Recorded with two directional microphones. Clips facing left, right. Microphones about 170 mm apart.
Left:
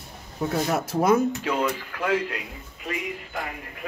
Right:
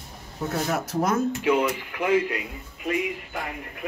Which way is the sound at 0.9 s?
5° left (ahead or behind).